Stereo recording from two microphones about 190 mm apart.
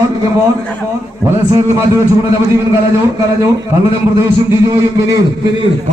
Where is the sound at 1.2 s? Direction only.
15° right (ahead or behind).